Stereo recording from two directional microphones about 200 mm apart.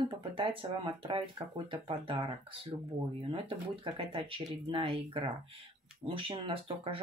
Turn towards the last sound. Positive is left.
turn(degrees=-25)  # may be behind; listen again after turning